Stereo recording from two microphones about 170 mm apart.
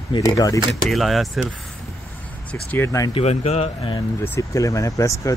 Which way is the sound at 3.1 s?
40° left (ahead or behind).